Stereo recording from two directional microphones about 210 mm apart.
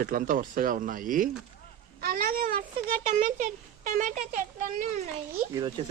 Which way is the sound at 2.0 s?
45° right (ahead or behind).